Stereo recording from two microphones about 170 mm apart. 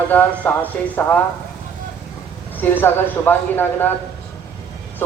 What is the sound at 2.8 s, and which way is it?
Speech, 10° left (ahead or behind).